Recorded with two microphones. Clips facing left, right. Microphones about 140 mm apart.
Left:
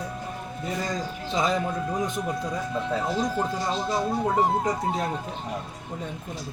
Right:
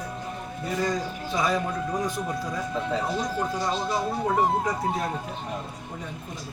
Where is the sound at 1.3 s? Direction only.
25° left (ahead or behind).